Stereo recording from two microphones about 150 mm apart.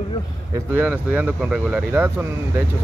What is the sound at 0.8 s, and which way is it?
Speech, 10° right (ahead or behind).